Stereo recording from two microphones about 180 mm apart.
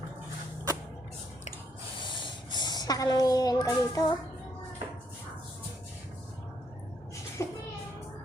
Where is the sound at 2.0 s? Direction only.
25° left (ahead or behind).